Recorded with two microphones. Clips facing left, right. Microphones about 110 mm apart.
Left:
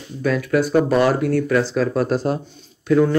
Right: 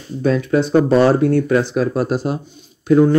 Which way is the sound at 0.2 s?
25° right (ahead or behind).